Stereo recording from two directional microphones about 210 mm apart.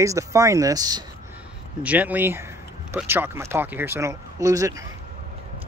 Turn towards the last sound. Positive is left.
turn(degrees=-15)  # may be behind; listen again after turning